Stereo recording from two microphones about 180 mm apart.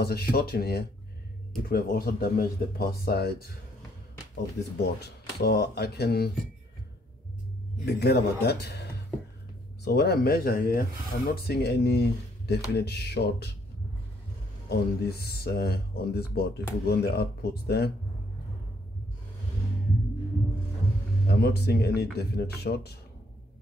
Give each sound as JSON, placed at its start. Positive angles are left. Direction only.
{"t": 0.0, "sound": "speech", "side_deg": 60}
{"t": 4.7, "sound": "speech", "side_deg": 65}
{"t": 7.8, "sound": "speech", "side_deg": 65}
{"t": 9.8, "sound": "speech", "side_deg": 65}
{"t": 14.7, "sound": "speech", "side_deg": 60}
{"t": 21.3, "sound": "speech", "side_deg": 65}